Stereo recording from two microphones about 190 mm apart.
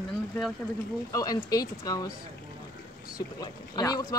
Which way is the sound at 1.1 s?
20° left (ahead or behind).